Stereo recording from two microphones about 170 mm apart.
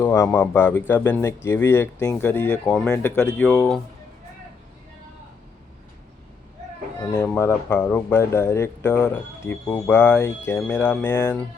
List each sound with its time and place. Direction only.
0.0 s speech: 15° left (ahead or behind)
7.1 s speech: 15° left (ahead or behind)